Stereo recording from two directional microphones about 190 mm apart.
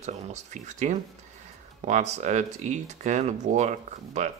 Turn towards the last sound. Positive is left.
turn(degrees=-35)  # may be behind; listen again after turning